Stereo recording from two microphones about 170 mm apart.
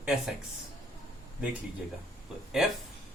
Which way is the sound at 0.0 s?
5° right (ahead or behind).